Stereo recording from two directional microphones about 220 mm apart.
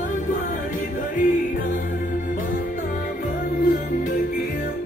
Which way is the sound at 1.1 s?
35° left (ahead or behind).